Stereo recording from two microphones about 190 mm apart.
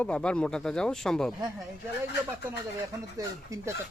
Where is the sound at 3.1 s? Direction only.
15° right (ahead or behind).